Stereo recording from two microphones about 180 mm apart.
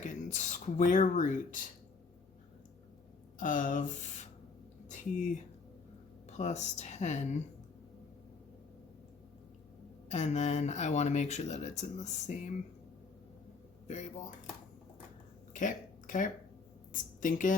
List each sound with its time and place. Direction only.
0.0 s speech: 40° left (ahead or behind)
3.3 s speech: 50° left (ahead or behind)
6.3 s speech: 40° left (ahead or behind)
10.1 s speech: 40° left (ahead or behind)
13.8 s speech: 40° left (ahead or behind)
15.5 s a sound: 45° left (ahead or behind)
16.9 s speech: 45° left (ahead or behind)